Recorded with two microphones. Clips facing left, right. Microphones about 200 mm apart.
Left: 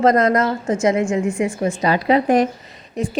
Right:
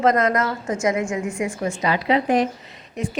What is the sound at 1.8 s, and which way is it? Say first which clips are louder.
Speech: left 4 dB; 45° left (ahead or behind).